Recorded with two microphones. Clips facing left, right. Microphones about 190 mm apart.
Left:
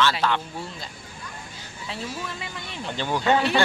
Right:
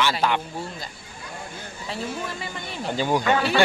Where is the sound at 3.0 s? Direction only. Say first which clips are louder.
Right 4 dB; 15° right (ahead or behind).